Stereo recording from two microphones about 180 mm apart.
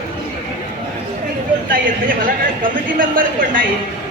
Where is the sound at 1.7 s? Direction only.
50° right (ahead or behind).